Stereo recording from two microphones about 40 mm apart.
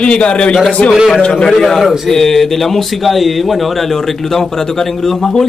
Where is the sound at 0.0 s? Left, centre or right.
Left.